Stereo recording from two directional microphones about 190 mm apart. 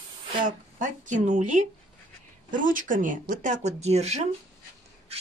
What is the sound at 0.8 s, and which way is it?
Speech, 40° right (ahead or behind).